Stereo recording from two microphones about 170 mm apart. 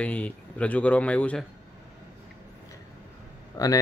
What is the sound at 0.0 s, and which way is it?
Speech, 10° left (ahead or behind).